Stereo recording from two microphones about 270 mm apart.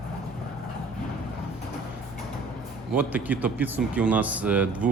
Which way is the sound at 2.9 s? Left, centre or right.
Centre.